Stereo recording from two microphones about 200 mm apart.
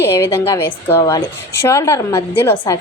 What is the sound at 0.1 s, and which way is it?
A woman's voice, 15° left (ahead or behind).